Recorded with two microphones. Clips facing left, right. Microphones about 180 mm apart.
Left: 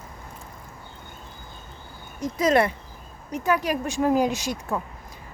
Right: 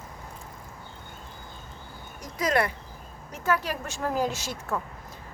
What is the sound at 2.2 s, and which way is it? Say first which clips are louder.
Speech: left 6 dB; 25° left (ahead or behind).